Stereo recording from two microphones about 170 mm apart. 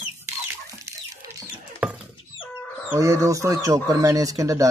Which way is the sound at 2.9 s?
20° right (ahead or behind).